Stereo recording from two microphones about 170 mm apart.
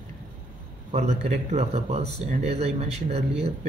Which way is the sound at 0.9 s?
40° right (ahead or behind).